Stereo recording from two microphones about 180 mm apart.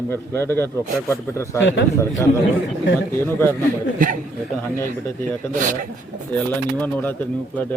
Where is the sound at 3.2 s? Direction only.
10° left (ahead or behind).